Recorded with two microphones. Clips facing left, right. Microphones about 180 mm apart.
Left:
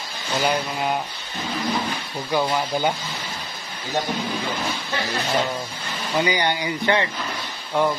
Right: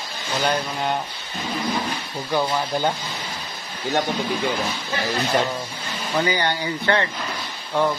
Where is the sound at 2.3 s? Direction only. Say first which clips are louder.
Even; 10° left (ahead or behind).